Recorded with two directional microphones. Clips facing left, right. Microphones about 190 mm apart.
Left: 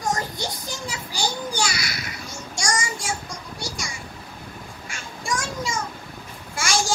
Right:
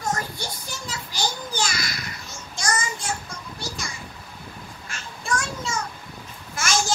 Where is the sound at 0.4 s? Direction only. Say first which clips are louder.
Left 4 dB; 15° left (ahead or behind).